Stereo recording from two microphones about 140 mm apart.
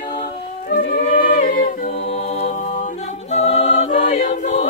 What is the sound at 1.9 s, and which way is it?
Music, 45° left (ahead or behind).